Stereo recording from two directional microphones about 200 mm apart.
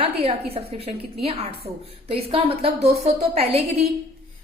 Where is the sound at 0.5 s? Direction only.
30° right (ahead or behind).